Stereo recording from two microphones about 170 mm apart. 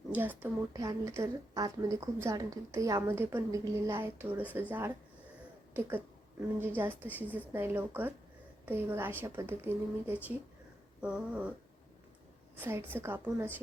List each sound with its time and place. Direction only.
0.1 s a woman's voice: 10° right (ahead or behind)
6.6 s a woman's voice: 10° right (ahead or behind)
11.0 s dog: 5° right (ahead or behind)
12.5 s a woman's voice: 10° right (ahead or behind)